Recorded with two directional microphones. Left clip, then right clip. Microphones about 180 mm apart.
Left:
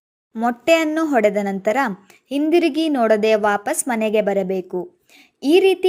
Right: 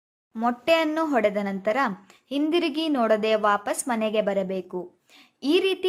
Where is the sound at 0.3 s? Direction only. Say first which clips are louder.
Left 5 dB; 20° left (ahead or behind).